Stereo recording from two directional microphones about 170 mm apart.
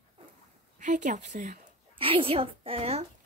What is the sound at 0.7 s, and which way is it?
Speech, 45° right (ahead or behind).